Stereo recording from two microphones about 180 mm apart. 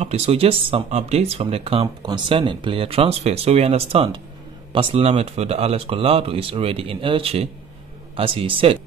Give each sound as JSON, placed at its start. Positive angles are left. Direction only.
{"t": 0.0, "sound": "speech", "side_deg": -35}